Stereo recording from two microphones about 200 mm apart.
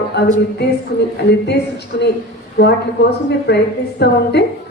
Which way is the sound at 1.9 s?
55° left (ahead or behind).